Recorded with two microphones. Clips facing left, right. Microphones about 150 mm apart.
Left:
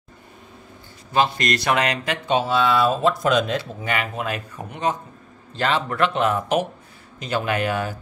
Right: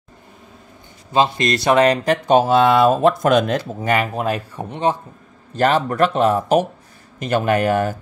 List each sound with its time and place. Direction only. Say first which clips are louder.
1.1 s speech: right 3 dB; 25° right (ahead or behind)
5.6 s speech: right 5 dB; 40° right (ahead or behind)
7.2 s speech: right 6 dB; 50° right (ahead or behind)